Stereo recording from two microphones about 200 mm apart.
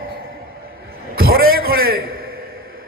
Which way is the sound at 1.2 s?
50° right (ahead or behind).